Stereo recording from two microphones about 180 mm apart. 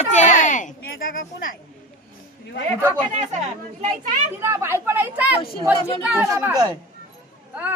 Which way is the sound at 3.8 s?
40° right (ahead or behind).